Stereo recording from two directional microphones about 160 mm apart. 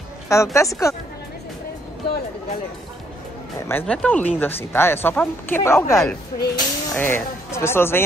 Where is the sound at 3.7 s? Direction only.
10° left (ahead or behind).